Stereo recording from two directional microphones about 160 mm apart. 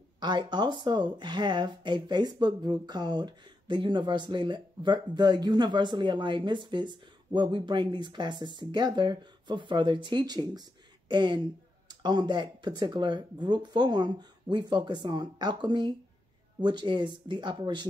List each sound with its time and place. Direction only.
0.2 s speech: 30° right (ahead or behind)